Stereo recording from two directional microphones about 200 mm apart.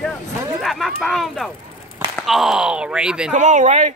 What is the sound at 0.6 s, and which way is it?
Speech, centre (ahead or behind).